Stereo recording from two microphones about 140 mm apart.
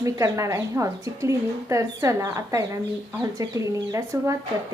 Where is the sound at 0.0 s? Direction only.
20° right (ahead or behind).